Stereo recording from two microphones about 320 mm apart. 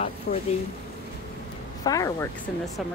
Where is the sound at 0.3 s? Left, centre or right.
Left.